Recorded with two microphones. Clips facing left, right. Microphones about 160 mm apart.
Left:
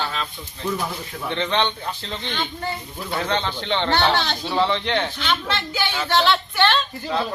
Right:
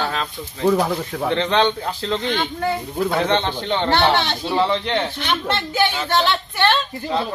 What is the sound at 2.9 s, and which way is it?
Speech, 60° right (ahead or behind).